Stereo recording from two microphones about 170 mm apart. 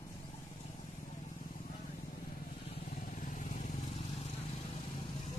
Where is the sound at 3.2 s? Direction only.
45° left (ahead or behind).